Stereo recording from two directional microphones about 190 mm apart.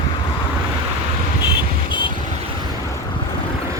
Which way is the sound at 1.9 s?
25° left (ahead or behind).